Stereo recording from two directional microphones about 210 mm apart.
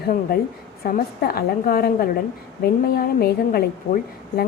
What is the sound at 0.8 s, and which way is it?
A woman's voice, 45° left (ahead or behind).